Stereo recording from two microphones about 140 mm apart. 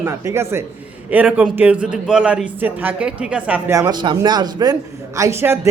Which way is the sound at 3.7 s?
25° right (ahead or behind).